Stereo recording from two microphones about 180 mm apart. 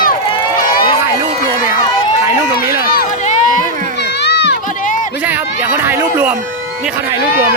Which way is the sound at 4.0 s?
70° left (ahead or behind).